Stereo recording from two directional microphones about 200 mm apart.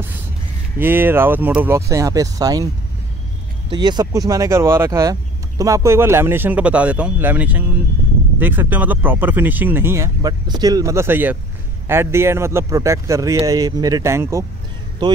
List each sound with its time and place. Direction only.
0.7 s speech: 10° right (ahead or behind)
3.7 s speech: 20° right (ahead or behind)